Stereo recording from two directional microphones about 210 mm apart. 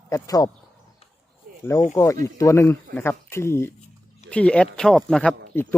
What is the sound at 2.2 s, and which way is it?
Speech, 15° left (ahead or behind).